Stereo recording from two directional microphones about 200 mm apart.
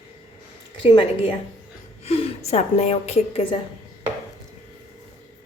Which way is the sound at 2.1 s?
30° left (ahead or behind).